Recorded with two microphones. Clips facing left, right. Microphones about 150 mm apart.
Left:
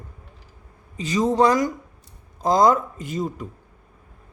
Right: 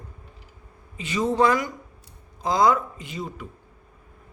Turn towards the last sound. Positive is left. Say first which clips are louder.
# left 6 dB
turn(degrees=45)  # may be behind; listen again after turning